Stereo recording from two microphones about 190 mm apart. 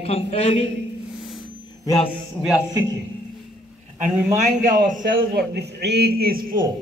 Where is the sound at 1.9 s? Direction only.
30° left (ahead or behind).